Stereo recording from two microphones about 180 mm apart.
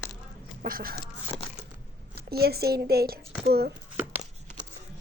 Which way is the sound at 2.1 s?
60° right (ahead or behind).